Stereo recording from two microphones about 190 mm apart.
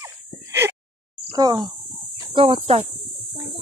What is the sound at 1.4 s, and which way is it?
Speech, 20° right (ahead or behind).